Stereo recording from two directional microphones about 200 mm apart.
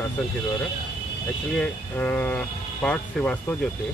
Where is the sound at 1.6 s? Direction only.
5° left (ahead or behind).